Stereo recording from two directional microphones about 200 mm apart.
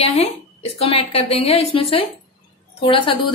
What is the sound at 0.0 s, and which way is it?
A woman's voice, 30° left (ahead or behind).